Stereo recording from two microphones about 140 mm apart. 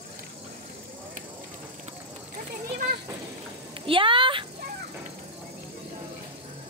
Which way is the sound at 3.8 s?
40° right (ahead or behind).